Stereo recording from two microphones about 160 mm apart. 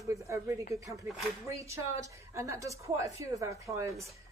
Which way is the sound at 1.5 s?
20° right (ahead or behind).